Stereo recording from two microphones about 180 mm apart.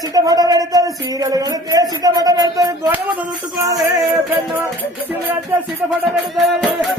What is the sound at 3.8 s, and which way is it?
Music, 20° right (ahead or behind).